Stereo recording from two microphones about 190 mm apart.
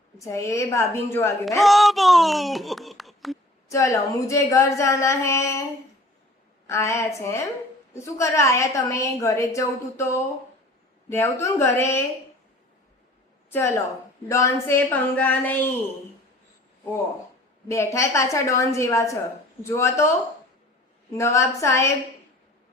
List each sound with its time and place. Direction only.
0.2 s a woman's voice: 15° left (ahead or behind)
1.5 s speech: centre (ahead or behind)
3.7 s a woman's voice: 15° left (ahead or behind)
6.7 s a woman's voice: 15° left (ahead or behind)
11.1 s a woman's voice: 15° left (ahead or behind)
13.5 s a woman's voice: 15° left (ahead or behind)
17.7 s a woman's voice: 15° left (ahead or behind)
21.1 s a woman's voice: 15° left (ahead or behind)